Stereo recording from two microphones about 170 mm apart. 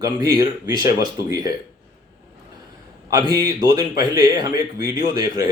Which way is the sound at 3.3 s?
20° right (ahead or behind).